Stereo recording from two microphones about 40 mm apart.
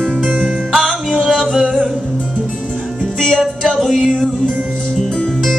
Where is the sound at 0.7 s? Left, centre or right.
Centre.